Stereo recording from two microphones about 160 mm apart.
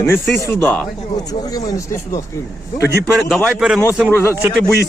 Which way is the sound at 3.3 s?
5° left (ahead or behind).